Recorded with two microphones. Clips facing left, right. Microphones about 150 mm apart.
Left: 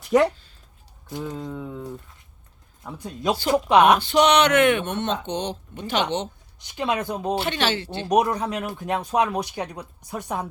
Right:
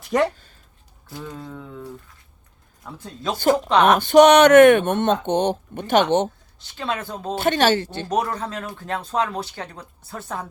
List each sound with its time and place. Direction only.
0.0 s speech: centre (ahead or behind)
1.0 s speech: 20° left (ahead or behind)
3.9 s speech: 50° right (ahead or behind)
6.6 s speech: 15° left (ahead or behind)
7.3 s speech: 45° right (ahead or behind)
8.0 s speech: 15° left (ahead or behind)